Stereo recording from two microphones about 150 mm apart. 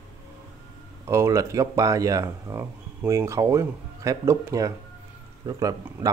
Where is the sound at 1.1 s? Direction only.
20° right (ahead or behind).